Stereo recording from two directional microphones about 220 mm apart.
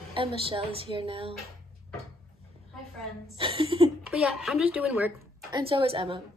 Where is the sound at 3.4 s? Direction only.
25° right (ahead or behind).